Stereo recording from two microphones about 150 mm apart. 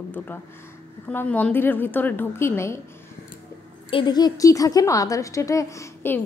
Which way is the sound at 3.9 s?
30° left (ahead or behind).